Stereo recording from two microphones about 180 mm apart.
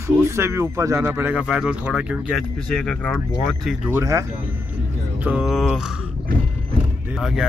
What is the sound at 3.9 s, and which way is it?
Speech, 15° right (ahead or behind).